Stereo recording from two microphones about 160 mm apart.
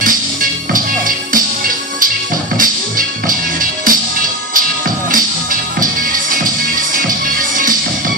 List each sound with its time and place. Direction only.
0.0 s music: 60° right (ahead or behind)
2.5 s music: 60° right (ahead or behind)